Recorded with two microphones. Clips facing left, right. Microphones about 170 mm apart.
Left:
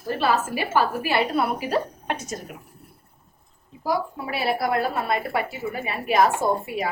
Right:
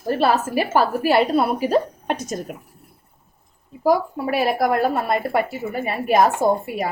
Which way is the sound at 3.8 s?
50° right (ahead or behind).